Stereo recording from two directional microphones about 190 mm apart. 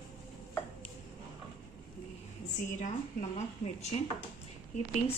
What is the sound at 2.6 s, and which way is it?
Speech, 40° left (ahead or behind).